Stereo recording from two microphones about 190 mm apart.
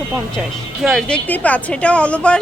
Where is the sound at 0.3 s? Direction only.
Centre (ahead or behind).